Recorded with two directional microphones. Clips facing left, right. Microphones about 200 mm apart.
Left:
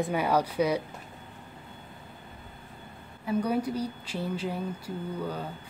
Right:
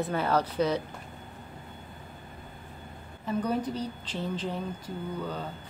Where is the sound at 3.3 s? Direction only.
10° left (ahead or behind).